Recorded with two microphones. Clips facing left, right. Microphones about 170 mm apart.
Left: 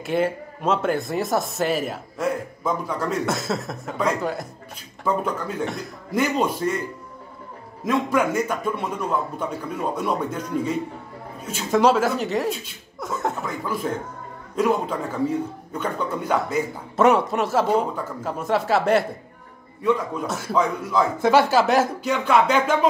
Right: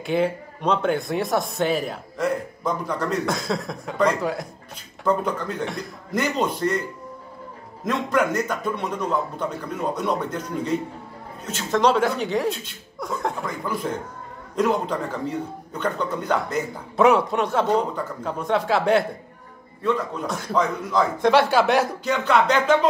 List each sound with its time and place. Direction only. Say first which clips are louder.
0.0 s a man's voice: even; centre (ahead or behind)
7.8 s a man's voice: left 1 dB; 10° left (ahead or behind)
20.2 s speech: left 1 dB; 5° left (ahead or behind)